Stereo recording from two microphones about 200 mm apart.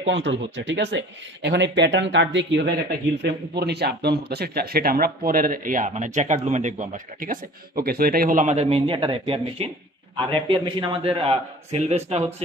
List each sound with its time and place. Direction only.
0.0 s a man's voice: 65° right (ahead or behind); by 12.0 s 30° right (ahead or behind)